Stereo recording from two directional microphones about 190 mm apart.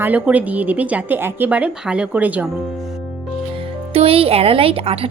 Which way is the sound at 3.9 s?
30° right (ahead or behind).